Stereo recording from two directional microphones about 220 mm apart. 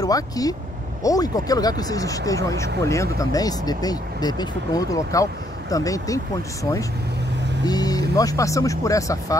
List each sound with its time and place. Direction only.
0.0 s speech: 15° left (ahead or behind)